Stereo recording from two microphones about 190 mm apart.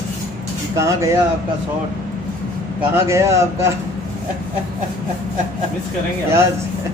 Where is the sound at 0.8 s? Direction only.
15° right (ahead or behind).